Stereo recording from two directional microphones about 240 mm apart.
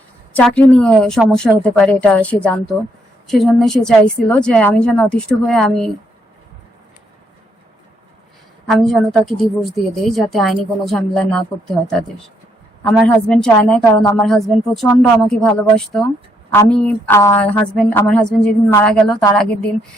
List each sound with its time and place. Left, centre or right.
0.3 s a woman's voice: centre
8.6 s a woman's voice: centre
12.8 s a woman's voice: centre